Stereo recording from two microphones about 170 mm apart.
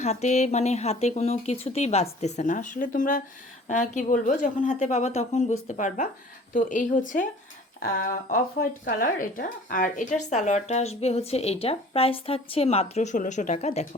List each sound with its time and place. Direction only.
0.0 s speech: 40° left (ahead or behind)
7.8 s speech: 60° left (ahead or behind); by 13.8 s 40° left (ahead or behind)